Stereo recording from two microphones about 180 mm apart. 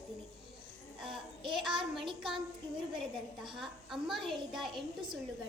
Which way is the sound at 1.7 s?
25° right (ahead or behind).